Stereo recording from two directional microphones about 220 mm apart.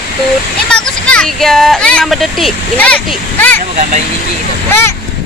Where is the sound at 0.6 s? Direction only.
5° left (ahead or behind).